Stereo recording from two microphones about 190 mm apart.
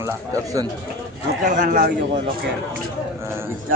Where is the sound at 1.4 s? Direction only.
40° right (ahead or behind).